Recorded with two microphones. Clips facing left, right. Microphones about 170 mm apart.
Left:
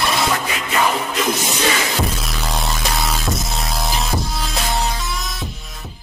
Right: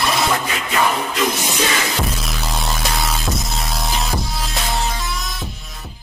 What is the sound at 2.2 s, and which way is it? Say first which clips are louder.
Music: left 1 dB; centre (ahead or behind).